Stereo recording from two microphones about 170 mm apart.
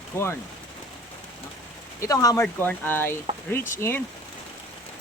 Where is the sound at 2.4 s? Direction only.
10° left (ahead or behind).